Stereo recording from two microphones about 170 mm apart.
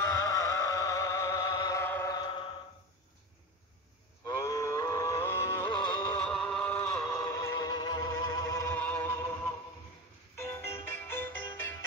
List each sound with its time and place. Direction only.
0.0 s music: 20° left (ahead or behind)
4.4 s music: 20° left (ahead or behind)
6.1 s music: 5° left (ahead or behind)
7.2 s music: 20° left (ahead or behind)
8.7 s music: 10° left (ahead or behind)